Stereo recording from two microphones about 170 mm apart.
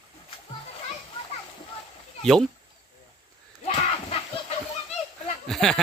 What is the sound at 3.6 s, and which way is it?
Battle cry, 35° left (ahead or behind).